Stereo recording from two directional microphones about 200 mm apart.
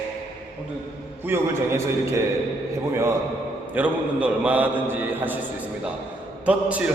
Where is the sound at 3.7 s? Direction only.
5° right (ahead or behind).